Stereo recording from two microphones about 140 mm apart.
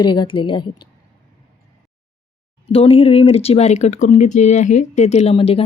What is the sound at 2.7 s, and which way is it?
Speech, 45° left (ahead or behind).